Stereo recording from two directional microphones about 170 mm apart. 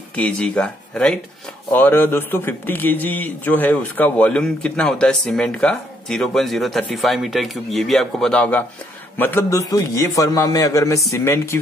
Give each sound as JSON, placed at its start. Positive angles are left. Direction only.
{"t": 0.1, "sound": "a man's voice", "side_deg": 5}